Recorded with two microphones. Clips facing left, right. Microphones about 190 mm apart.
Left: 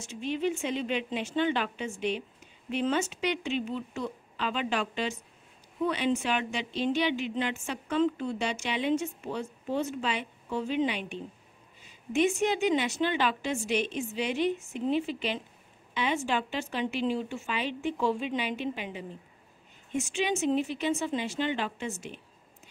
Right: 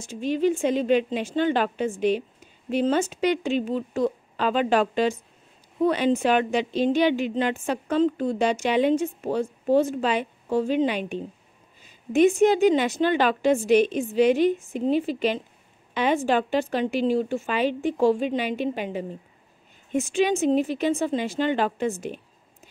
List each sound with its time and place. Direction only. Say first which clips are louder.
0.2 s a woman's voice: right 8 dB; 40° right (ahead or behind)